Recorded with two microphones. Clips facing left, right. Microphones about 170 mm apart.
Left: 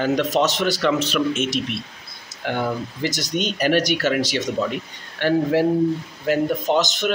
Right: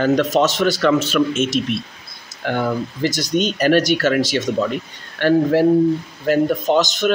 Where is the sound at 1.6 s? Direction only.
40° right (ahead or behind).